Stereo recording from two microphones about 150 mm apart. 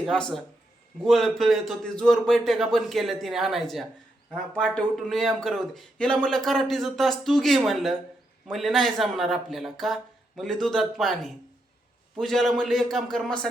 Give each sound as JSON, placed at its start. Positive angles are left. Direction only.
{"t": 0.0, "sound": "a man's voice", "side_deg": 5}